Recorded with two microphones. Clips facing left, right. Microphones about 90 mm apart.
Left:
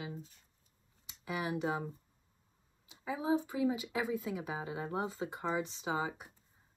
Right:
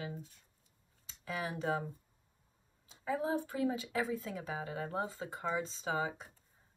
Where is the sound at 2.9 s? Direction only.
10° left (ahead or behind).